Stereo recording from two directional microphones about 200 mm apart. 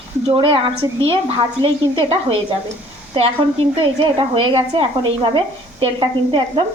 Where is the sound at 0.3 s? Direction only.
25° right (ahead or behind).